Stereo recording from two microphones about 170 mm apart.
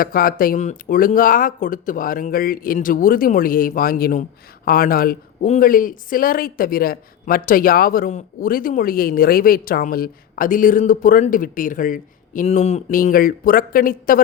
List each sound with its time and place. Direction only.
0.0 s speech: 60° left (ahead or behind); by 12.8 s 40° left (ahead or behind)
12.9 s speech: 55° left (ahead or behind)